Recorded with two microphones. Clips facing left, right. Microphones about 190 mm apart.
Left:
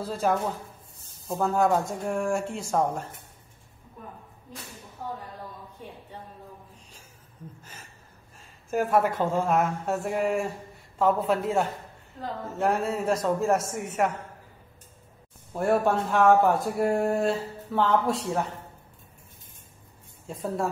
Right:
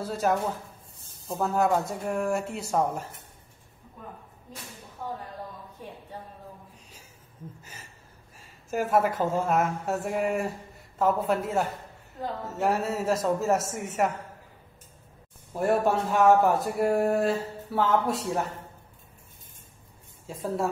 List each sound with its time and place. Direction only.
0.1 s speech: 5° right (ahead or behind)
7.6 s a sound: 10° right (ahead or behind)
8.4 s speech: 5° right (ahead or behind)
15.5 s speech: 5° right (ahead or behind)
20.2 s speech: centre (ahead or behind)